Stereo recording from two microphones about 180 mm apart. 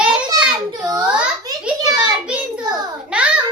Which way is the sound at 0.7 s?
20° right (ahead or behind).